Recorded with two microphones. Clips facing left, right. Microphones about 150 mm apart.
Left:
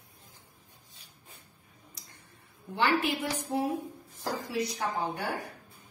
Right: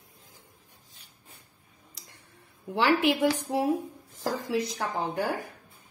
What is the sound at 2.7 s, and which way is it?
Speech, 85° right.